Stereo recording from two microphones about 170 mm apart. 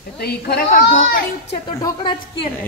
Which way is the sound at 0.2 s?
70° left (ahead or behind).